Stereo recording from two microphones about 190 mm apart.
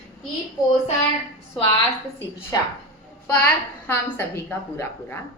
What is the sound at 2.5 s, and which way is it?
Speech, 20° left (ahead or behind).